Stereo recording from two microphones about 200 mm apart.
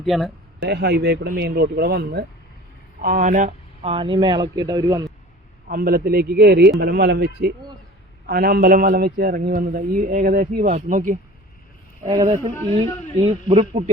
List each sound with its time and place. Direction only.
0.0 s speech: centre (ahead or behind)
0.6 s a man's voice: 55° right (ahead or behind); by 5.0 s 20° right (ahead or behind)
5.6 s a man's voice: 45° right (ahead or behind)
8.3 s a man's voice: 50° right (ahead or behind); by 13.9 s 30° right (ahead or behind)